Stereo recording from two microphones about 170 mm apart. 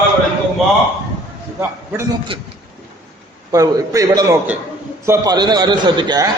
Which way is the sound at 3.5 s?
20° right (ahead or behind).